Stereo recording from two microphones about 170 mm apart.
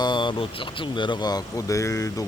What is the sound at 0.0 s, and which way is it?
Speech, 25° left (ahead or behind).